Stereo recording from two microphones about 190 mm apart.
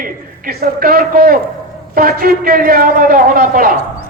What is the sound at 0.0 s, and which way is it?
A man's voice, 50° right (ahead or behind).